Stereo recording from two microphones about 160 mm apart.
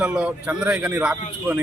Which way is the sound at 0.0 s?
5° right (ahead or behind).